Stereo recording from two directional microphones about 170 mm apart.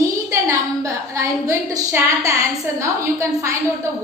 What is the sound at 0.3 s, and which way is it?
A woman's voice, 20° right (ahead or behind).